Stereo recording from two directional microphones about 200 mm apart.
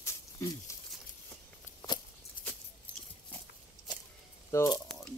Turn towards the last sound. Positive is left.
turn(degrees=15)  # may be behind; listen again after turning